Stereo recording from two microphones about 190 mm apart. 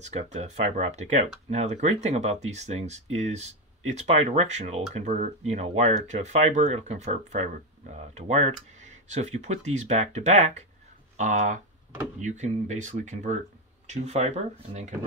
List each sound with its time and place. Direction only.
0.0 s speech: 35° right (ahead or behind)